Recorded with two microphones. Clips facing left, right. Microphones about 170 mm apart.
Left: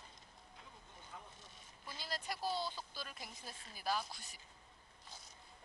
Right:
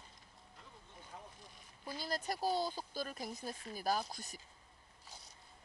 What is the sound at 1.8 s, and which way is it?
Speech, 45° right (ahead or behind).